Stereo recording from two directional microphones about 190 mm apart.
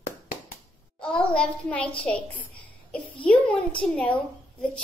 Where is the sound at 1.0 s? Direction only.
5° left (ahead or behind).